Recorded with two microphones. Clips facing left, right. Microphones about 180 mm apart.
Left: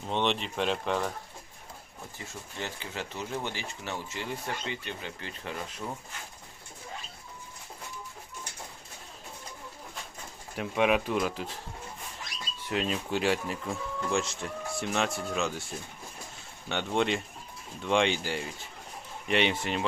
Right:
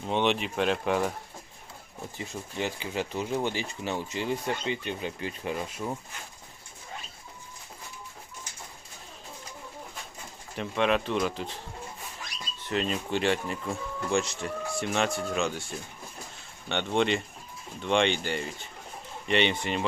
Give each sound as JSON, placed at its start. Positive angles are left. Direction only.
{"t": 0.1, "sound": "speech", "side_deg": -5}
{"t": 2.1, "sound": "speech", "side_deg": -15}
{"t": 10.6, "sound": "speech", "side_deg": 10}
{"t": 12.6, "sound": "speech", "side_deg": 5}
{"t": 16.6, "sound": "speech", "side_deg": 0}